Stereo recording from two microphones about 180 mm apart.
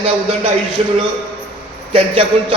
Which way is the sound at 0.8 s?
35° right (ahead or behind).